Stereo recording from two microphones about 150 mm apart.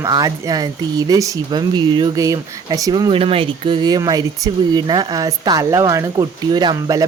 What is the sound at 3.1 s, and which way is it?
Speech, 40° right (ahead or behind).